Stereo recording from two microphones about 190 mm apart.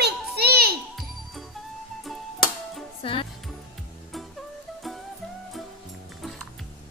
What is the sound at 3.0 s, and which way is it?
Music, 30° left (ahead or behind).